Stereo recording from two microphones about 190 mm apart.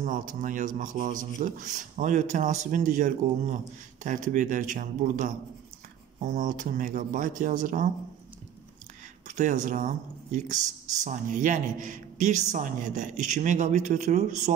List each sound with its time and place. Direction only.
0.0 s a man's voice: 45° right (ahead or behind)
9.3 s speech: 40° right (ahead or behind)